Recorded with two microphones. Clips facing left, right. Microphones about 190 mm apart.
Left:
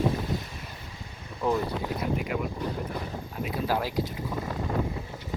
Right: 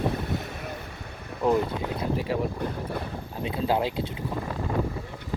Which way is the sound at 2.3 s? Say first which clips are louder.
Right 3 dB; 30° right (ahead or behind).